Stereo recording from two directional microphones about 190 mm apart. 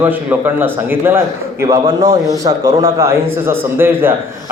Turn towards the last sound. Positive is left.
turn(degrees=-10)  # may be behind; listen again after turning